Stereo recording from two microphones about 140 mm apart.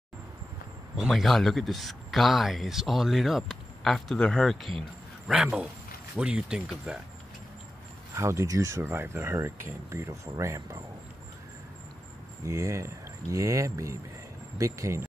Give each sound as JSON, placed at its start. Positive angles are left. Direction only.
{"t": 0.9, "sound": "speech", "side_deg": 0}
{"t": 8.1, "sound": "speech", "side_deg": -20}
{"t": 12.4, "sound": "speech", "side_deg": -20}